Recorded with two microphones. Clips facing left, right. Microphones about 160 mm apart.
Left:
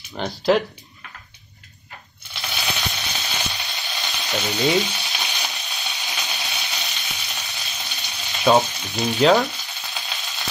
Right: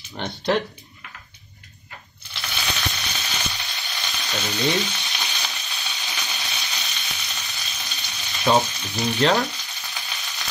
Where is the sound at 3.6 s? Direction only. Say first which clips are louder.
Left 2 dB; 20° left (ahead or behind).